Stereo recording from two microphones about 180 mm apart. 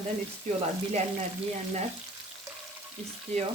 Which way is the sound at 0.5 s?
35° right (ahead or behind).